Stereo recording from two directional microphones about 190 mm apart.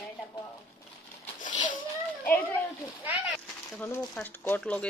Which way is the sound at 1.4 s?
40° left (ahead or behind).